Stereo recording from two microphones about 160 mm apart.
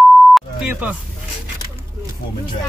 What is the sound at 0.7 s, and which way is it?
Speech, 10° right (ahead or behind).